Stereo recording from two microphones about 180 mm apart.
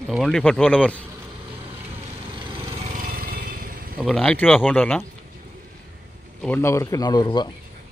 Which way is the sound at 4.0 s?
5° left (ahead or behind).